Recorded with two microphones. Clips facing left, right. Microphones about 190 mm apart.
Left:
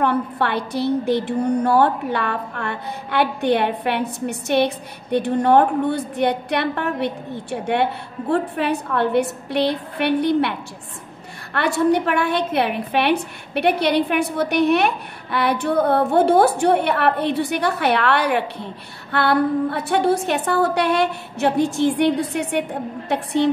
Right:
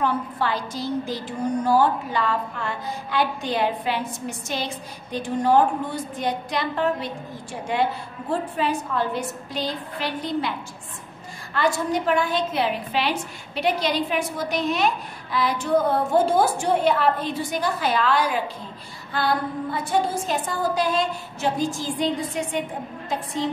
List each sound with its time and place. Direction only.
0.0 s a woman's voice: 65° left (ahead or behind)
11.5 s a woman's voice: 65° left (ahead or behind)